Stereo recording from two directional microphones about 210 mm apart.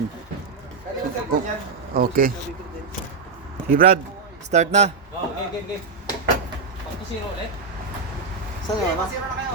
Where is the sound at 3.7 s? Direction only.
40° right (ahead or behind).